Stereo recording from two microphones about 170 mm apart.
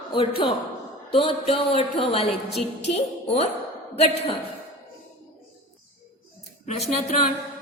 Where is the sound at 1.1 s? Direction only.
30° left (ahead or behind).